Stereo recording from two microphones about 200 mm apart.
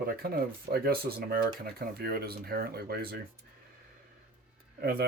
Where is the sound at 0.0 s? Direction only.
50° right (ahead or behind).